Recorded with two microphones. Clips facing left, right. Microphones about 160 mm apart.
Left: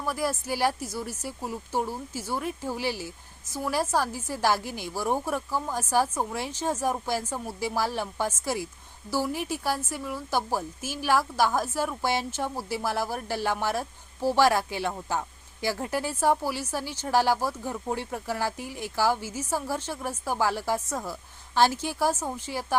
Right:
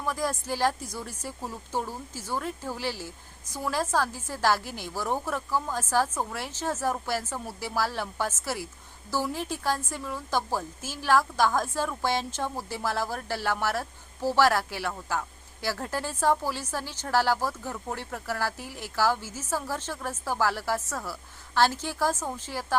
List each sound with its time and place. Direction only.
0.0 s a woman's voice: 10° left (ahead or behind)